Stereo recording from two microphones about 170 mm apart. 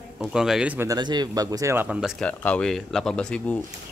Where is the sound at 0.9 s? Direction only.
25° right (ahead or behind); by 3.6 s 5° left (ahead or behind).